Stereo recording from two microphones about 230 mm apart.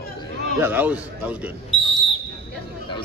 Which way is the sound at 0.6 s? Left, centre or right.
Centre.